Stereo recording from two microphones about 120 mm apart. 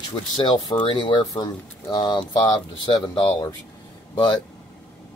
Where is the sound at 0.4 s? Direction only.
40° left (ahead or behind).